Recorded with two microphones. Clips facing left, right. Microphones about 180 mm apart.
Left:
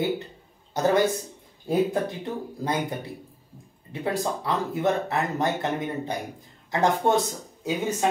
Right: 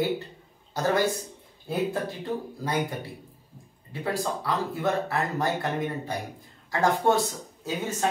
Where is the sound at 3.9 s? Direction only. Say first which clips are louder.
Left 2 dB; 20° left (ahead or behind).